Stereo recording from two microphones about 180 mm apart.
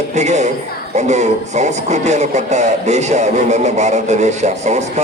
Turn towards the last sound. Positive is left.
turn(degrees=-40)  # may be behind; listen again after turning